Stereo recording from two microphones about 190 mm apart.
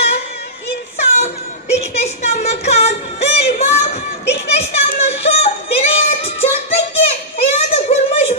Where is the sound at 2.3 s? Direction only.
35° left (ahead or behind).